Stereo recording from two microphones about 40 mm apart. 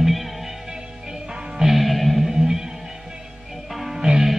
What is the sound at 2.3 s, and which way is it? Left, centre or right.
Music, centre.